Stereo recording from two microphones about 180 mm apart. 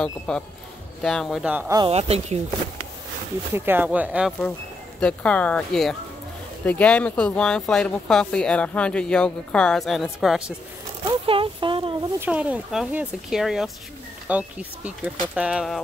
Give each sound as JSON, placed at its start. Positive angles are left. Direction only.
{"t": 0.3, "sound": "speech", "side_deg": 5}
{"t": 1.9, "sound": "speech", "side_deg": -35}
{"t": 3.5, "sound": "speech", "side_deg": -10}
{"t": 5.0, "sound": "speech", "side_deg": 5}
{"t": 11.1, "sound": "a sound", "side_deg": -30}
{"t": 12.2, "sound": "speech", "side_deg": -5}